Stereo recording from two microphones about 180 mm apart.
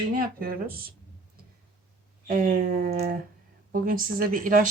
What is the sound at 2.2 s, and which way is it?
Speech, 50° right (ahead or behind).